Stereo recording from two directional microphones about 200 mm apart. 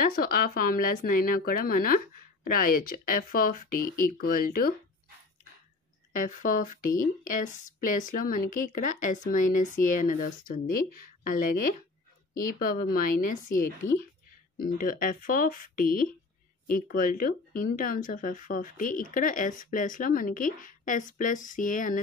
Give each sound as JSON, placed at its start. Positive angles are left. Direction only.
{"t": 0.1, "sound": "speech", "side_deg": 45}
{"t": 6.1, "sound": "speech", "side_deg": 40}